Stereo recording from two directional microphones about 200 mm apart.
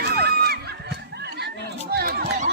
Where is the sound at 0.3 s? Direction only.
50° right (ahead or behind).